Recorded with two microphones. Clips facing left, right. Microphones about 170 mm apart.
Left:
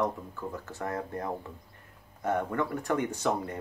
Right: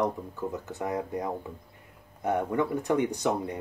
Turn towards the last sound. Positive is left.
turn(degrees=-15)  # may be behind; listen again after turning